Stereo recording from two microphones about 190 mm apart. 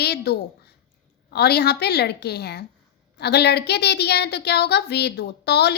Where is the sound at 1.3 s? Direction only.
60° left (ahead or behind).